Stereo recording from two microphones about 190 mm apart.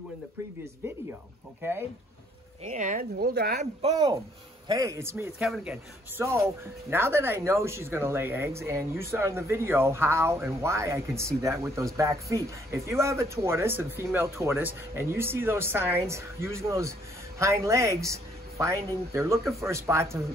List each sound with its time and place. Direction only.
1.6 s speech: 10° right (ahead or behind)
2.7 s speech: 45° right (ahead or behind)
3.9 s speech: 20° right (ahead or behind)